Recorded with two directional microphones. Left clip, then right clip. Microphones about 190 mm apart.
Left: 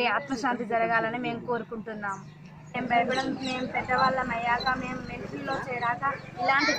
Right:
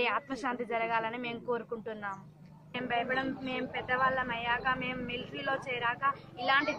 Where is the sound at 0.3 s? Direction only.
25° right (ahead or behind).